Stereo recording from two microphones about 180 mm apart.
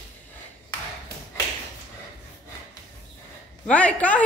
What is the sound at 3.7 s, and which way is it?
Speech, 5° left (ahead or behind).